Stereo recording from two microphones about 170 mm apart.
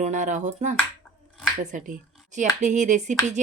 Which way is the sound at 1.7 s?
50° right (ahead or behind).